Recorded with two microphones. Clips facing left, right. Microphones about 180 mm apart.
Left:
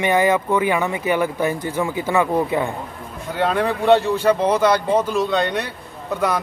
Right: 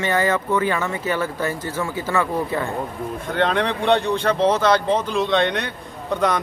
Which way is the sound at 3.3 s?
5° left (ahead or behind).